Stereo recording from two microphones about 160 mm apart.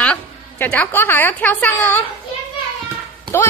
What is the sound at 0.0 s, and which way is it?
A woman's voice, 10° left (ahead or behind).